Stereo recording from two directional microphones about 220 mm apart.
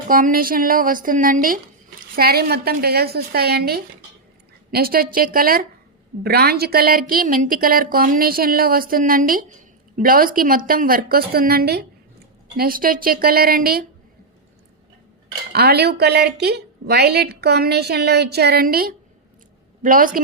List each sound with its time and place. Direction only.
0.1 s speech: 40° right (ahead or behind)
15.5 s speech: 45° right (ahead or behind)